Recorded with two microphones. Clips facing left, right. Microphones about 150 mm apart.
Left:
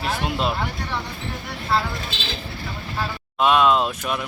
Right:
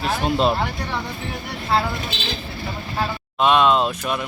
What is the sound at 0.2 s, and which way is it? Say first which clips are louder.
Speech: right 5 dB; 30° right (ahead or behind).